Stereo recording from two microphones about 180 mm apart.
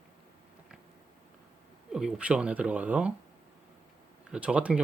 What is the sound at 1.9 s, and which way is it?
Speech, 5° right (ahead or behind).